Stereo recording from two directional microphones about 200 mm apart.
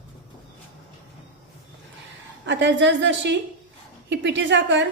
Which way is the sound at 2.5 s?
65° right (ahead or behind).